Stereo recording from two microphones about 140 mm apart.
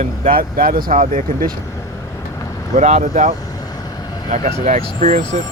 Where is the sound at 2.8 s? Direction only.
55° right (ahead or behind).